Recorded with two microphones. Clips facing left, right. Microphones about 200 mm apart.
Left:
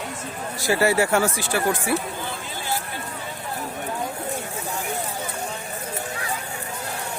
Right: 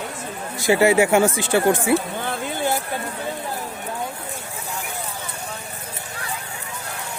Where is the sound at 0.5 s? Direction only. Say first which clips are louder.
Right 4 dB; 20° right (ahead or behind).